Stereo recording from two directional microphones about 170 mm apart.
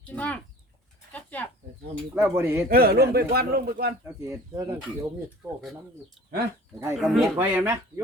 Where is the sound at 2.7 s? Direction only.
65° right (ahead or behind).